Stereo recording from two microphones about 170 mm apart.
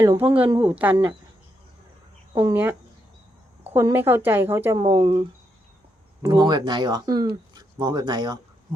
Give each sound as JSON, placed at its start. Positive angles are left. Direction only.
{"t": 0.0, "sound": "speech", "side_deg": -20}
{"t": 0.3, "sound": "a woman's voice", "side_deg": -10}
{"t": 2.3, "sound": "a woman's voice", "side_deg": -15}
{"t": 4.8, "sound": "speech", "side_deg": -30}
{"t": 6.2, "sound": "speech", "side_deg": -25}